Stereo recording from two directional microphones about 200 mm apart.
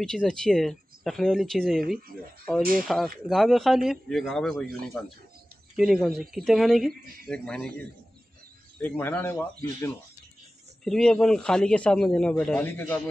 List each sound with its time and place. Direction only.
0.0 s speech: 5° left (ahead or behind)
1.8 s speech: 45° right (ahead or behind)
2.8 s speech: centre (ahead or behind)